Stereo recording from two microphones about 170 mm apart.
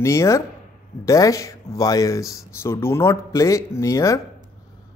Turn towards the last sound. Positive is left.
turn(degrees=20)  # may be behind; listen again after turning